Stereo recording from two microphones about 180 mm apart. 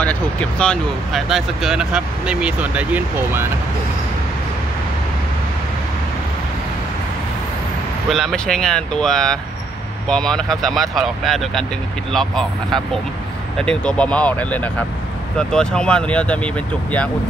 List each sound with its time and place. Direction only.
0.0 s speech: 5° left (ahead or behind); by 3.4 s 10° right (ahead or behind)
8.1 s speech: centre (ahead or behind)